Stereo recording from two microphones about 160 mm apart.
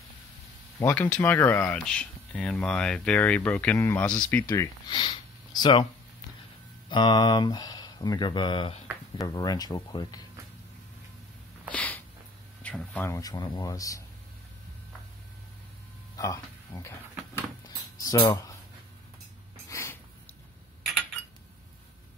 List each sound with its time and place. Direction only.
0.7 s speech: 15° left (ahead or behind)
4.8 s speech: 30° left (ahead or behind)
6.9 s speech: 30° left (ahead or behind)
11.7 s a sound: 10° left (ahead or behind)
12.6 s speech: 10° left (ahead or behind)
16.2 s speech: 20° left (ahead or behind)
17.6 s a sound: 20° left (ahead or behind)
18.3 s speech: 20° left (ahead or behind)
19.7 s a sound: 15° left (ahead or behind)